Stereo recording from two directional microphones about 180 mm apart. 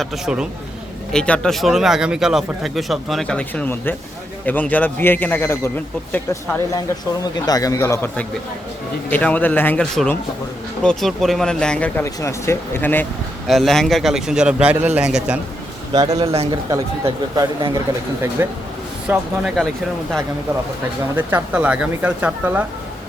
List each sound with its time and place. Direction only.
0.0 s speech: 5° right (ahead or behind)
7.3 s speech: 20° left (ahead or behind); by 15.4 s 5° right (ahead or behind)
15.9 s speech: 20° right (ahead or behind)
16.3 s a man's voice: 35° right (ahead or behind)
16.6 s speech: 20° right (ahead or behind)
19.0 s speech: 5° right (ahead or behind)
21.2 s speech: 10° right (ahead or behind)